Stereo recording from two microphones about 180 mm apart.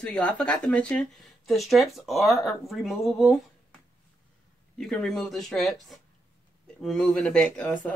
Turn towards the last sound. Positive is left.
turn(degrees=10)  # may be behind; listen again after turning